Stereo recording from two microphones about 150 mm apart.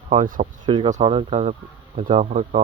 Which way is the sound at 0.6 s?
35° right (ahead or behind).